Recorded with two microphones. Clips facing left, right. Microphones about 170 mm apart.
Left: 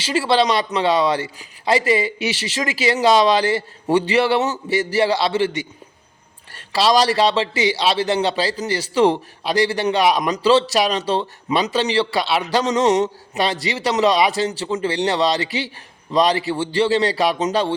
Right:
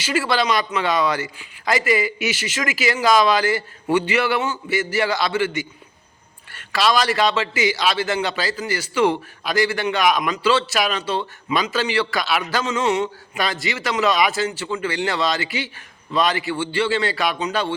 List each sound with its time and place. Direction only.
0.0 s a man's voice: 30° left (ahead or behind)